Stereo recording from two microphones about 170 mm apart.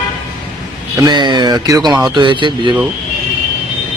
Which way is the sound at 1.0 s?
25° right (ahead or behind).